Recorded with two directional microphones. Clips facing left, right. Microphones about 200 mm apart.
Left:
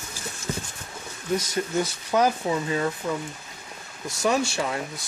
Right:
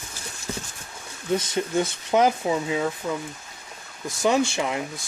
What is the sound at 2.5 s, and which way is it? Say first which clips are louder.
Speech: right 1 dB; 10° right (ahead or behind).